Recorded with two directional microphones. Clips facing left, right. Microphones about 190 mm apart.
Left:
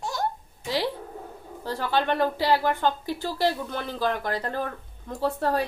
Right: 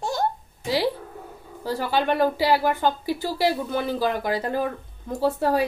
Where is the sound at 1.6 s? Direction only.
5° right (ahead or behind).